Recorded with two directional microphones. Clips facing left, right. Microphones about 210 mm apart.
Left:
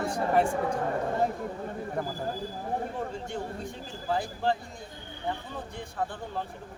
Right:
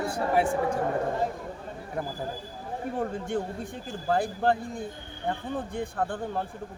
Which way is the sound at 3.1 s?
55° right (ahead or behind).